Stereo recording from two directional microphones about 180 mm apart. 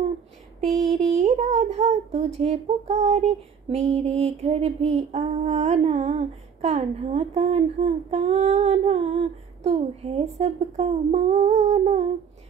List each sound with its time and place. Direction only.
0.9 s speech: 35° right (ahead or behind)